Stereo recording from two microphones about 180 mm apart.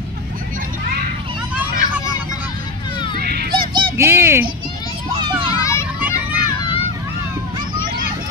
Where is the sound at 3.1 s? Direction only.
60° right (ahead or behind).